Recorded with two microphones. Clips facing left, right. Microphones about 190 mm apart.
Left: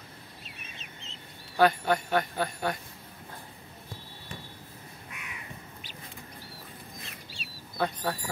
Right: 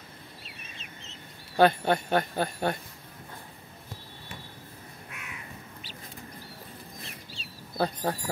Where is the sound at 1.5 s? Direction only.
25° right (ahead or behind).